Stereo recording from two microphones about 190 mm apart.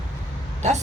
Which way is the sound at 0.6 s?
40° right (ahead or behind).